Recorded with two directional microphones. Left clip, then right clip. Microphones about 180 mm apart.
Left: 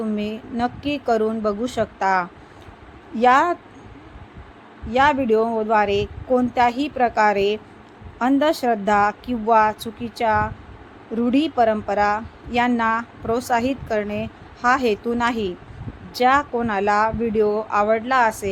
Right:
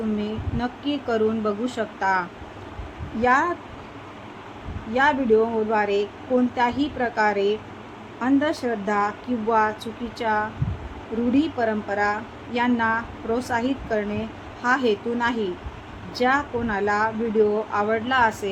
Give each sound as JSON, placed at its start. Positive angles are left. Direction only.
{"t": 0.2, "sound": "a woman's voice", "side_deg": 45}
{"t": 4.9, "sound": "a woman's voice", "side_deg": 50}